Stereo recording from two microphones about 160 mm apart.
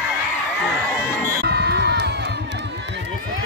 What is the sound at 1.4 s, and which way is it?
Crowd, 90° right.